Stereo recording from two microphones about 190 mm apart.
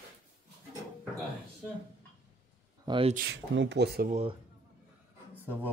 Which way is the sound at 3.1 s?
65° right (ahead or behind).